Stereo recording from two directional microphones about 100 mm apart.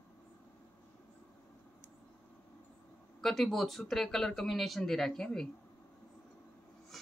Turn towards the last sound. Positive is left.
turn(degrees=5)  # may be behind; listen again after turning